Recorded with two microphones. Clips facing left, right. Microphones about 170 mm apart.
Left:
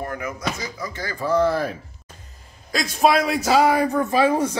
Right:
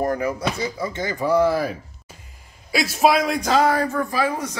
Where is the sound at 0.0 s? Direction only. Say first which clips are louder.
Right 6 dB; 35° right (ahead or behind).